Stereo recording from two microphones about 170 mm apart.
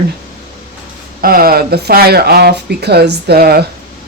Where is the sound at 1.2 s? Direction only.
60° right (ahead or behind).